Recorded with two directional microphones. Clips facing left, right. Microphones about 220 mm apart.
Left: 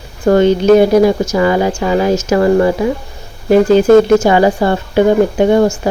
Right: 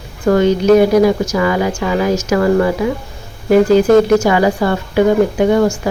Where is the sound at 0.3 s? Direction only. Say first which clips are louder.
Left 2 dB; 25° left (ahead or behind).